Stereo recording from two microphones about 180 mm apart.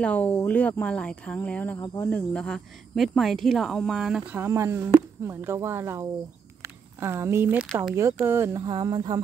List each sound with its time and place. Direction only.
0.0 s speech: 10° left (ahead or behind)
4.3 s speech: 15° right (ahead or behind)